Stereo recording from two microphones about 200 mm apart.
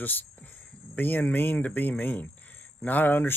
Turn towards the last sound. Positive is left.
turn(degrees=10)  # may be behind; listen again after turning